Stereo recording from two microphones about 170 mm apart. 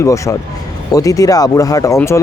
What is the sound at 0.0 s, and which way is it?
Speech, 20° left (ahead or behind).